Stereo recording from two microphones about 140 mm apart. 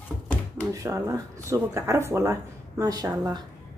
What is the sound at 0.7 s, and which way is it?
Speech, 25° right (ahead or behind).